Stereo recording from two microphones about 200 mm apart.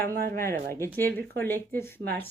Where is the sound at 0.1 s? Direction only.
50° right (ahead or behind).